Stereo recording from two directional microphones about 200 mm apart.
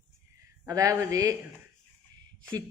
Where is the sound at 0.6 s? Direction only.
15° right (ahead or behind).